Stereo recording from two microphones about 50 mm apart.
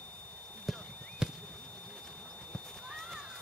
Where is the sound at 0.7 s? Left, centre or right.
Centre.